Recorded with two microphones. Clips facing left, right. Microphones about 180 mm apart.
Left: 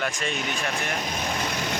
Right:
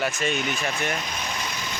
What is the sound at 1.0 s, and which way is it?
Vehicle, 45° left (ahead or behind).